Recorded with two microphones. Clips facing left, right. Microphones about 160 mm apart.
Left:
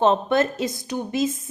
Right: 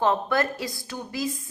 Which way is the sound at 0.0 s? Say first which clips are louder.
Left 4 dB; 25° left (ahead or behind).